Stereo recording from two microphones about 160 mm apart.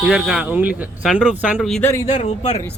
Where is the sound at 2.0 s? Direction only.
45° left (ahead or behind).